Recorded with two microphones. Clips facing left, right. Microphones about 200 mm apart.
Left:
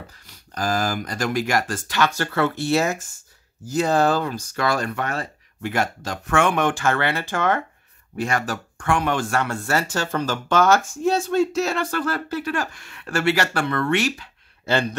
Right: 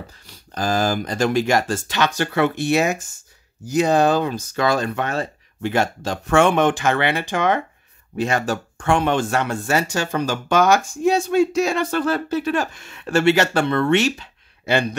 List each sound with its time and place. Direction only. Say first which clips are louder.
0.3 s speech: right 2 dB; 25° right (ahead or behind)